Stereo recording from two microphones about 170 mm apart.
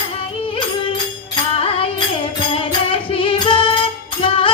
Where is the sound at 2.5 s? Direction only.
30° left (ahead or behind).